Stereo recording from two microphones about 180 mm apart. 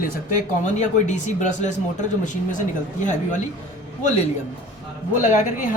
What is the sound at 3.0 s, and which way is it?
Speech, 45° left (ahead or behind).